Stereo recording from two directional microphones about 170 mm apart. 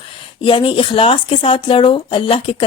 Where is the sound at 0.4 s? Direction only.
30° left (ahead or behind).